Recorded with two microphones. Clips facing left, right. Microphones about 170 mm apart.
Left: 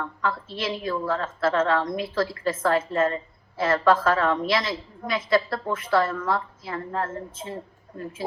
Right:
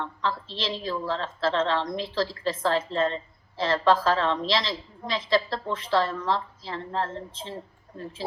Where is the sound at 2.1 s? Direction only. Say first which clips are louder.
Left 1 dB; 50° left (ahead or behind).